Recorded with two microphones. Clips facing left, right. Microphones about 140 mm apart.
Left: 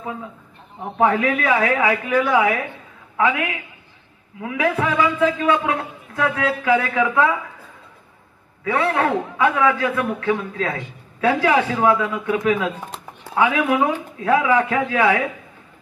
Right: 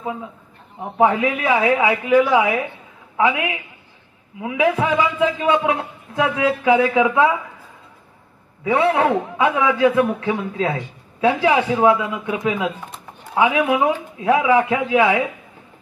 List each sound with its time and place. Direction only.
0.7 s a man's voice: 15° right (ahead or behind)
8.6 s a man's voice: 20° right (ahead or behind)